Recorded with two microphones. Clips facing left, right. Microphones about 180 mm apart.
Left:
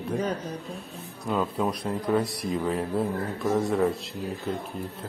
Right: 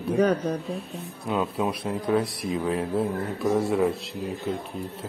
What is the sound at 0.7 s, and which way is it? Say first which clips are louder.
Speech: right 5 dB; centre (ahead or behind).